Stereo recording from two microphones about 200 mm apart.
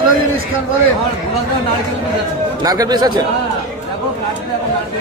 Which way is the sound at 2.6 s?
20° right (ahead or behind).